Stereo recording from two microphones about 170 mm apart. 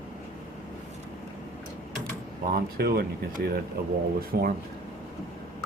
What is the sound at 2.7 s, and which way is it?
Speech, 60° right (ahead or behind).